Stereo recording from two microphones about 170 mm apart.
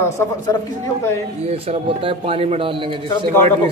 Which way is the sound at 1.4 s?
35° right (ahead or behind).